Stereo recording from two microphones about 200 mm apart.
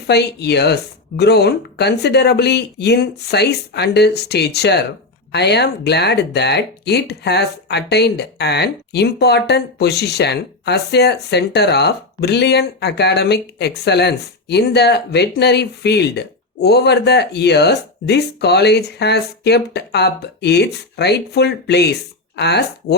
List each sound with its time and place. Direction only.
0.1 s speech: 55° left (ahead or behind)